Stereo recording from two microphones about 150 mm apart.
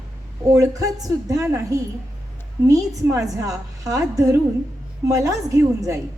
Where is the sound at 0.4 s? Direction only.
20° right (ahead or behind).